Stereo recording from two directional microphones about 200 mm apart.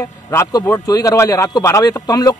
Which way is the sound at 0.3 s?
15° left (ahead or behind).